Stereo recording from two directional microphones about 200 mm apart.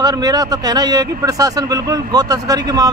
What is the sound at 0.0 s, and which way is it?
Speech, 20° right (ahead or behind).